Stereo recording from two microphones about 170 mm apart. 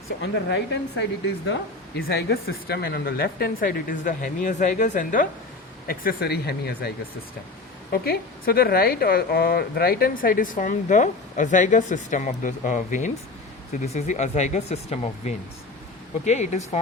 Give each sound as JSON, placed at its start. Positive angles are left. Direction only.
{"t": 0.2, "sound": "a woman's voice", "side_deg": 90}
{"t": 2.0, "sound": "a woman's voice", "side_deg": 65}
{"t": 8.0, "sound": "a woman's voice", "side_deg": 60}